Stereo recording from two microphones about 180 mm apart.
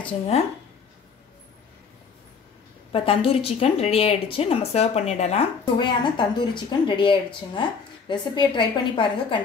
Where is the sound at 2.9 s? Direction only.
30° left (ahead or behind).